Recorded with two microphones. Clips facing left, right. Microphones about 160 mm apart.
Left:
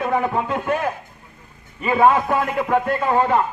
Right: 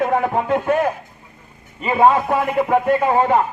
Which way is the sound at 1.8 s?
20° right (ahead or behind).